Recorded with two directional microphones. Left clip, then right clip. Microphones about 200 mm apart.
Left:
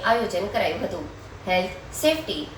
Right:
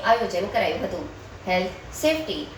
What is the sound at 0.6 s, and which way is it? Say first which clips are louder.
Speech: right 1 dB; centre (ahead or behind).